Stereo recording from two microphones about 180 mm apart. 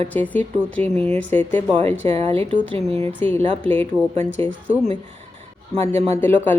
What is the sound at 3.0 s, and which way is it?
Speech, 10° left (ahead or behind).